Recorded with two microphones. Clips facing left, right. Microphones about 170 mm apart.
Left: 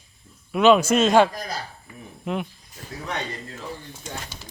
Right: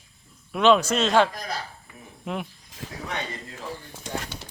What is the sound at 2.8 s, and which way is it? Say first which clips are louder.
Speech: right 1 dB; 90° right.